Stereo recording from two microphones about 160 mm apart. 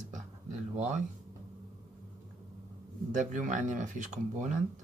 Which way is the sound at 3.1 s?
55° right (ahead or behind).